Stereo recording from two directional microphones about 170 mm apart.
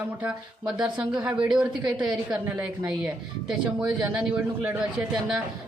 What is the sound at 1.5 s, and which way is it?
Speech, 25° right (ahead or behind).